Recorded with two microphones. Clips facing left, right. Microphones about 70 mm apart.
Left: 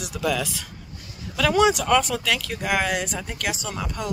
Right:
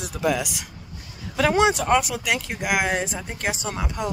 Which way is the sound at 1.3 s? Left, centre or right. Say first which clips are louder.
Even; right.